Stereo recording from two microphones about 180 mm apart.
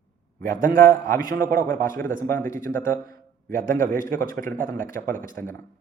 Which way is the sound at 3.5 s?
50° right (ahead or behind).